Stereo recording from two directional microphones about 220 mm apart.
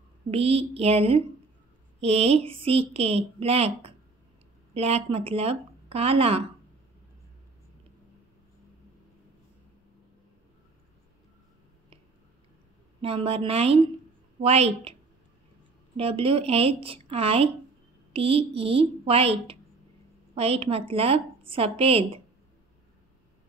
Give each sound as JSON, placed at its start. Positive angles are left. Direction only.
{"t": 0.3, "sound": "a woman's voice", "side_deg": -25}
{"t": 13.0, "sound": "a woman's voice", "side_deg": -25}
{"t": 16.0, "sound": "a woman's voice", "side_deg": -25}